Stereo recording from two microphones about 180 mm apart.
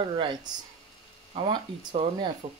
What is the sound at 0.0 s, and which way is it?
Speech, 30° right (ahead or behind).